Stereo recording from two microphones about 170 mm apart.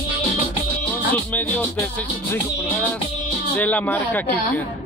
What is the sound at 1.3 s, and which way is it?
Speech, 10° left (ahead or behind).